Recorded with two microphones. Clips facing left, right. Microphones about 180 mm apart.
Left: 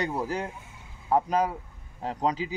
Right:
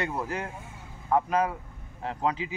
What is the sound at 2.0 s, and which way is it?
Speech, 35° left (ahead or behind).